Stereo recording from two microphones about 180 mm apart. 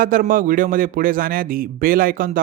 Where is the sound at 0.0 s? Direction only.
50° right (ahead or behind).